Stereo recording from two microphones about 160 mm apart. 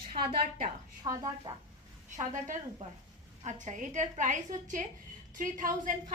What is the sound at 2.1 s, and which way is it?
A woman's voice, 55° right (ahead or behind).